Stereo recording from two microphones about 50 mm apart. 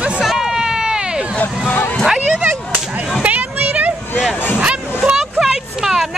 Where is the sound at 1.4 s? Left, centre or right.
Left.